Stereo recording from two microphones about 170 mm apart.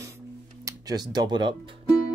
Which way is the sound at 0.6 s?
25° right (ahead or behind).